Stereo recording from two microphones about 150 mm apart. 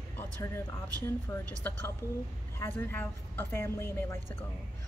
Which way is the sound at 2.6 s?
15° left (ahead or behind).